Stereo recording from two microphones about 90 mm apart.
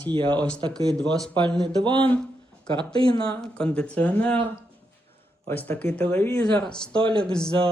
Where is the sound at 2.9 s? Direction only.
55° left (ahead or behind).